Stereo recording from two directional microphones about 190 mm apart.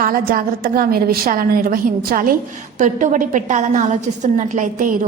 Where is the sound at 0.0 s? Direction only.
50° right (ahead or behind).